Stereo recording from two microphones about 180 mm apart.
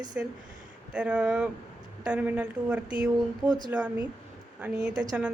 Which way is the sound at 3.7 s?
5° right (ahead or behind).